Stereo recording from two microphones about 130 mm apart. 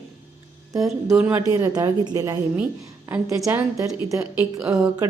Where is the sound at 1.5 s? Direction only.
30° right (ahead or behind).